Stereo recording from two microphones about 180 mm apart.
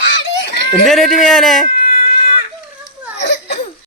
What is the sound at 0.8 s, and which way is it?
Speech, centre (ahead or behind).